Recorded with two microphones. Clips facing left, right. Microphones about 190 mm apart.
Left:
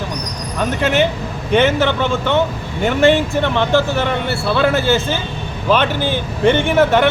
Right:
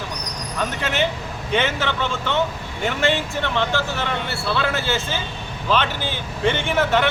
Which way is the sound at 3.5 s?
55° left (ahead or behind).